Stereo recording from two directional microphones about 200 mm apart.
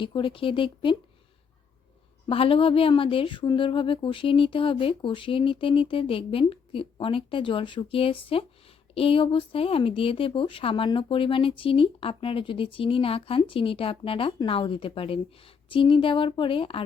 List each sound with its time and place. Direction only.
0.0 s speech: 25° left (ahead or behind)
2.2 s speech: 25° left (ahead or behind)